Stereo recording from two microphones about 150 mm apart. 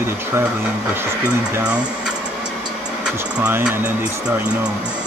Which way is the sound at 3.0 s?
5° right (ahead or behind).